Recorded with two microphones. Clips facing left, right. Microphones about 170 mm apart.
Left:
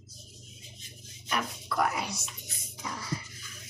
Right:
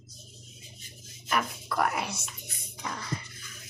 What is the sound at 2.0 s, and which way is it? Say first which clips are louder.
Whispering: right 1 dB; centre (ahead or behind).